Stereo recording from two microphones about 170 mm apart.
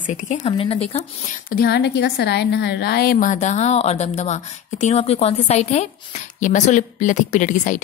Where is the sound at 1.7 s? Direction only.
80° left.